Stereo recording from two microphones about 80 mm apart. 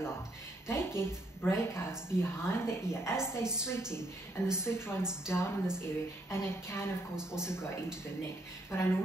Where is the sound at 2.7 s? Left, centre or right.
Left.